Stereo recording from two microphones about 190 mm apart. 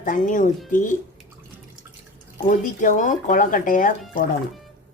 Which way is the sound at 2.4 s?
45° left (ahead or behind).